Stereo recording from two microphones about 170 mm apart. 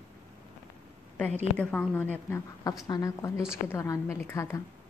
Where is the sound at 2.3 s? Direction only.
20° left (ahead or behind).